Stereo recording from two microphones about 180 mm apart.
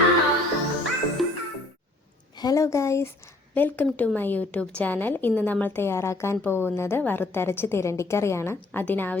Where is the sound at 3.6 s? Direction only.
10° left (ahead or behind).